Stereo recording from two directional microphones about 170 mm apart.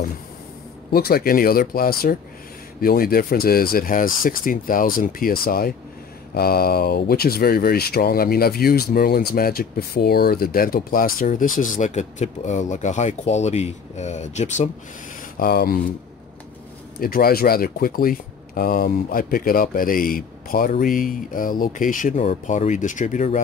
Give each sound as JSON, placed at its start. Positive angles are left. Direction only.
{"t": 0.9, "sound": "speech", "side_deg": 65}
{"t": 15.3, "sound": "speech", "side_deg": 60}
{"t": 17.0, "sound": "speech", "side_deg": 60}